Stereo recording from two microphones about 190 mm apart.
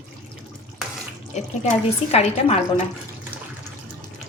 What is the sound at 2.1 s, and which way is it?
Speech, 35° left (ahead or behind).